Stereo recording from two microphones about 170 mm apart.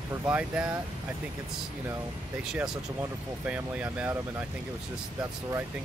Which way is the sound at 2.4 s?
5° right (ahead or behind).